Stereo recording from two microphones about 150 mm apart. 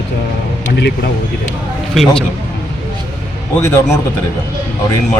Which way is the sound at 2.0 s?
Centre (ahead or behind).